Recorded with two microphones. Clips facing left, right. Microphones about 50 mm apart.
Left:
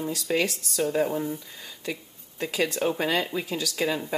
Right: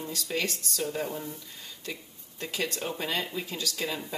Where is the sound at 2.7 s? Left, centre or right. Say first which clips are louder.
Left 7 dB; left.